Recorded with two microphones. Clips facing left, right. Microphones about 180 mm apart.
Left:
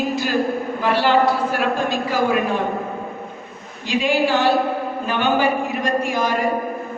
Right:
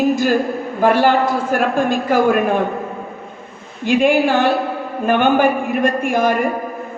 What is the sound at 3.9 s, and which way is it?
A woman's voice, 50° right (ahead or behind).